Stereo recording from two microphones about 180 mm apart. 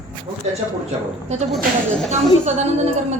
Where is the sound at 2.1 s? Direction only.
40° right (ahead or behind).